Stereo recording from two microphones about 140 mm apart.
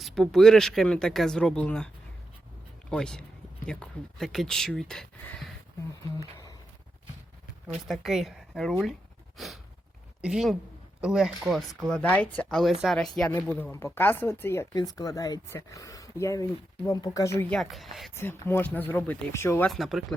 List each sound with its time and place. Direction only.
0.0 s speech: 5° left (ahead or behind)
2.9 s speech: 5° left (ahead or behind)
7.9 s speech: centre (ahead or behind)
10.2 s a woman's voice: 5° right (ahead or behind)
13.3 s speech: 15° left (ahead or behind)
17.5 s speech: centre (ahead or behind)
18.1 s speech: 15° left (ahead or behind)
19.6 s speech: centre (ahead or behind)